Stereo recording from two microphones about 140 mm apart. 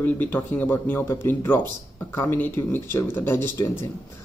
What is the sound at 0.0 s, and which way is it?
Speech, 15° left (ahead or behind).